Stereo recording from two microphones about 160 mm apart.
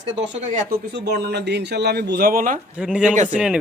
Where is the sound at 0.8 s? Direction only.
90° right; by 2.6 s 60° right (ahead or behind).